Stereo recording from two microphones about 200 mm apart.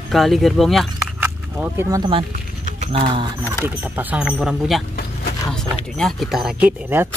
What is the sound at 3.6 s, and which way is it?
Speech, 10° right (ahead or behind).